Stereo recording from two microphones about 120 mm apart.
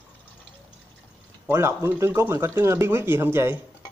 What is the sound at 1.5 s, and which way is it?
Speech, 20° right (ahead or behind).